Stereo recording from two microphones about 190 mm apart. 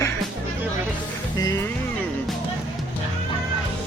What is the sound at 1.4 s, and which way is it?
Speech, 15° left (ahead or behind).